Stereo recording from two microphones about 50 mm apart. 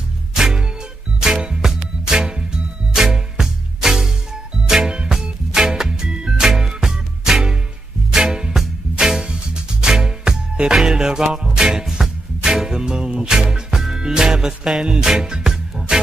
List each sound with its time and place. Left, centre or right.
0.3 s music: centre